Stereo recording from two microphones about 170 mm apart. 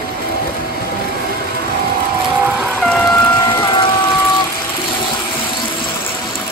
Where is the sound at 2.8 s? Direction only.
5° left (ahead or behind).